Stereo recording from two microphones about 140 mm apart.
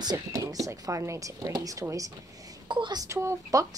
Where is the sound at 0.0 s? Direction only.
25° right (ahead or behind).